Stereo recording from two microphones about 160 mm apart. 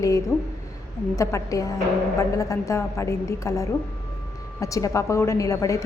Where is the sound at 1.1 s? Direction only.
20° left (ahead or behind).